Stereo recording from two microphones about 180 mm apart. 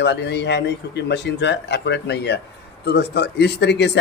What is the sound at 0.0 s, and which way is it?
A man's voice, 70° left (ahead or behind).